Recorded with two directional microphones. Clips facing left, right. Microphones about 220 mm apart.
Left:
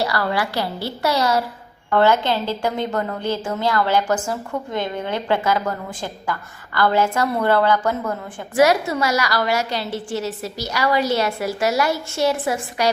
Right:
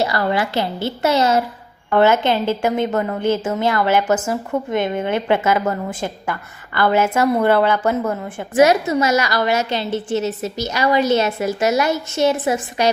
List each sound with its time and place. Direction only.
0.0 s a woman's voice: 20° right (ahead or behind)